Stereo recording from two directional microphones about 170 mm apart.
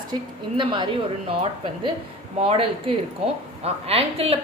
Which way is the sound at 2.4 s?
35° right (ahead or behind).